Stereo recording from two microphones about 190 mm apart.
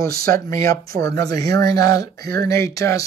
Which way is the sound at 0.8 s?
15° left (ahead or behind).